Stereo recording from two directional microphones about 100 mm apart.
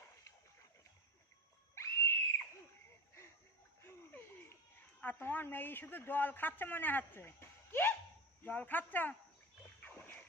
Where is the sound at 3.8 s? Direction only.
25° left (ahead or behind).